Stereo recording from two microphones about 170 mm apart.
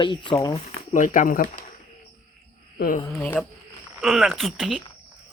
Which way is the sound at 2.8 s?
55° left (ahead or behind).